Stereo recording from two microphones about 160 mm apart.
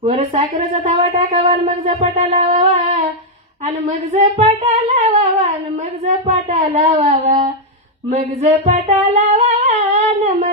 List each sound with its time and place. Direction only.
0.1 s humming: 40° right (ahead or behind)
1.4 s humming: 35° right (ahead or behind)
3.6 s speech: 45° right (ahead or behind)
8.2 s humming: 45° right (ahead or behind)